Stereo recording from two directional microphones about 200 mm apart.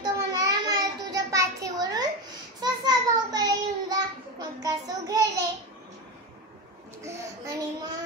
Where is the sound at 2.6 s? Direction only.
20° right (ahead or behind).